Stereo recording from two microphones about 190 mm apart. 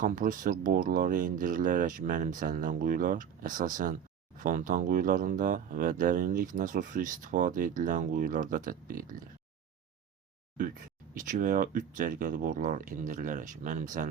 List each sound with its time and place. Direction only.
0.0 s speech: 45° right (ahead or behind)
11.1 s speech: 45° right (ahead or behind)